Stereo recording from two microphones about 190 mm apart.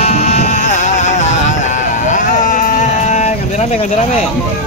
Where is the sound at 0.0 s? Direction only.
35° left (ahead or behind).